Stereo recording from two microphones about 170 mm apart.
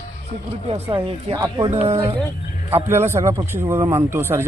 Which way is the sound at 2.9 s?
15° right (ahead or behind).